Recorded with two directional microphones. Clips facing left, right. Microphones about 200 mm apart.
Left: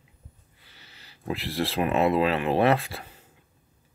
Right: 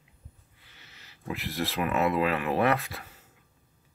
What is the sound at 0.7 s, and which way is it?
Speech, 30° left (ahead or behind).